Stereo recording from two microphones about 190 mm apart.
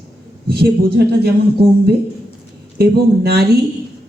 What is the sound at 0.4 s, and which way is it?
Speech, 55° right (ahead or behind).